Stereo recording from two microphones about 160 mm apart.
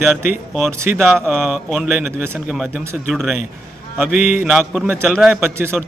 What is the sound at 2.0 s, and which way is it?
Speech, 15° right (ahead or behind).